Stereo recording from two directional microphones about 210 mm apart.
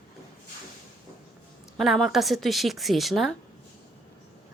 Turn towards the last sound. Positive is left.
turn(degrees=0)  # may be behind; listen again after turning